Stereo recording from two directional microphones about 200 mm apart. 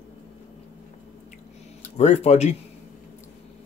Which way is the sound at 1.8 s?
35° left (ahead or behind).